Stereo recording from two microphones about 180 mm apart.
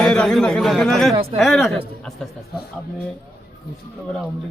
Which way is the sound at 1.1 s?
30° right (ahead or behind).